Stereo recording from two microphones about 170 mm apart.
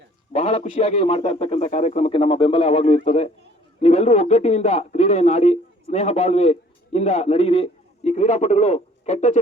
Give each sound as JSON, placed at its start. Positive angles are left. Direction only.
{"t": 0.3, "sound": "speech", "side_deg": 35}